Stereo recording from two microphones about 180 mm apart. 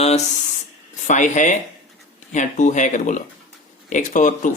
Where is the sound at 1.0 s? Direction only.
40° left (ahead or behind).